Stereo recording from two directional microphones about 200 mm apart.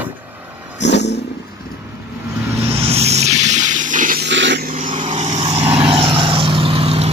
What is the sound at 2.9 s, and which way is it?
Water, 35° right (ahead or behind).